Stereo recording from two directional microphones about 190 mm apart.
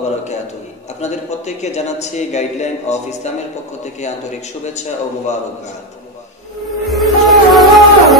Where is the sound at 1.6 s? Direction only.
35° left (ahead or behind).